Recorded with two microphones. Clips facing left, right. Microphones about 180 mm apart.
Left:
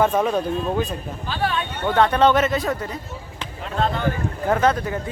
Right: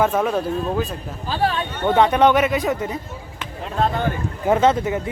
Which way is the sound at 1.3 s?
35° right (ahead or behind).